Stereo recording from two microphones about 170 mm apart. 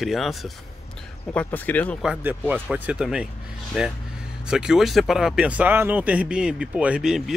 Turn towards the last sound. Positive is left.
turn(degrees=-5)  # may be behind; listen again after turning